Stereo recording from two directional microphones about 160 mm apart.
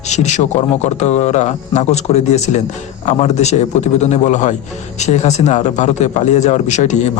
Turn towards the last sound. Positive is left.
turn(degrees=45)  # may be behind; listen again after turning